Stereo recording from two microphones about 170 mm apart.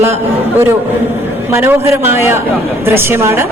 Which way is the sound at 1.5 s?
15° right (ahead or behind).